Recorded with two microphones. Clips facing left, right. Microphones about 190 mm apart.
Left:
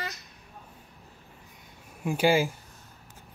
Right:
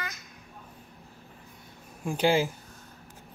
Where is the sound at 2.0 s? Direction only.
10° left (ahead or behind).